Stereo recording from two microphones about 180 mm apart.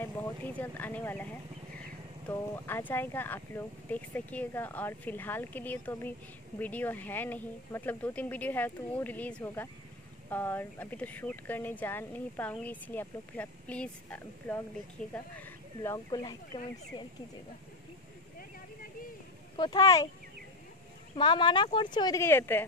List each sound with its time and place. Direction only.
0.0 s speech: 10° left (ahead or behind); by 17.1 s 30° left (ahead or behind)
19.5 s speech: 25° left (ahead or behind)
21.2 s speech: 25° left (ahead or behind)